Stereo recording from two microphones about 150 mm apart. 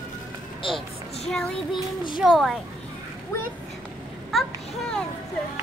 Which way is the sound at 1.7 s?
30° left (ahead or behind).